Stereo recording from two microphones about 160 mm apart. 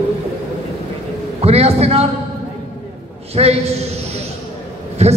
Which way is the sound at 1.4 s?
40° right (ahead or behind).